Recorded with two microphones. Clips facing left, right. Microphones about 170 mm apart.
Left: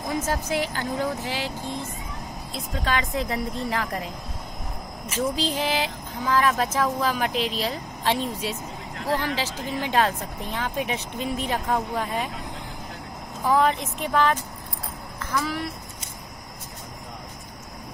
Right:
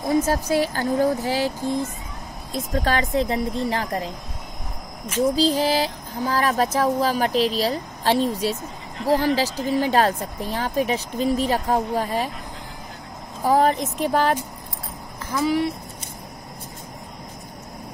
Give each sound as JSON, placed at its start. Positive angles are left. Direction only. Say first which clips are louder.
{"t": 0.1, "sound": "speech", "louder": "right 6 dB", "side_deg": -35}
{"t": 2.5, "sound": "speech", "louder": "right 5 dB", "side_deg": -45}
{"t": 5.2, "sound": "speech", "louder": "right 6 dB", "side_deg": -35}
{"t": 13.4, "sound": "speech", "louder": "right 3 dB", "side_deg": -40}